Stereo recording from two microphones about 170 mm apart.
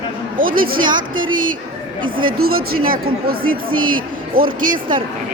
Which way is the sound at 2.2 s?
60° right (ahead or behind).